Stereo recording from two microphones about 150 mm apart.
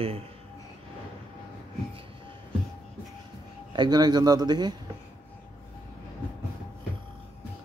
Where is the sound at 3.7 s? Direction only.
25° right (ahead or behind).